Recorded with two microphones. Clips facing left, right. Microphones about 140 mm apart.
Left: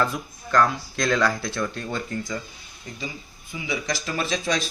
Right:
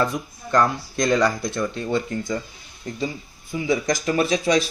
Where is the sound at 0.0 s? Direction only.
20° right (ahead or behind).